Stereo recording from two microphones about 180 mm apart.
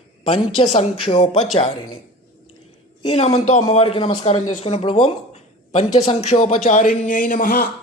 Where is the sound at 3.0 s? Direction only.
35° left (ahead or behind).